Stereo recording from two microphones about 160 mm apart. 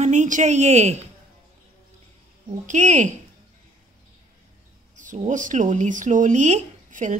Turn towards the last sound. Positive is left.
turn(degrees=-50)  # may be behind; listen again after turning